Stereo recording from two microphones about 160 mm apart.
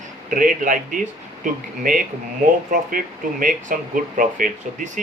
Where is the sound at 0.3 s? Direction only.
55° right (ahead or behind).